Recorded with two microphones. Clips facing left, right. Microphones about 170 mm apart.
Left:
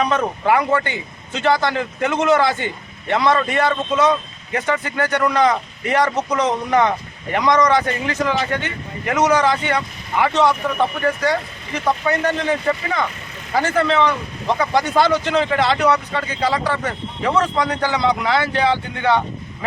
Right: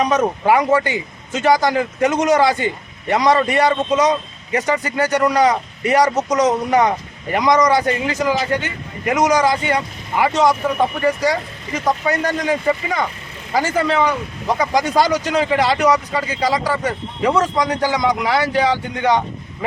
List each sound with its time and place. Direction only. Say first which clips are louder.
0.0 s speech: right 2 dB; 15° right (ahead or behind)
2.0 s speech: right 1 dB; 15° right (ahead or behind)
6.0 s speech: right 3 dB; 40° right (ahead or behind)
6.7 s speech: right 1 dB; 10° right (ahead or behind)